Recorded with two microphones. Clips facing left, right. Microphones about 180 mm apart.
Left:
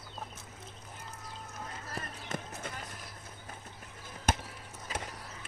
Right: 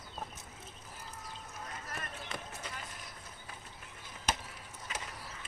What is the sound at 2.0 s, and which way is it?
Basketball bounce, 35° left (ahead or behind).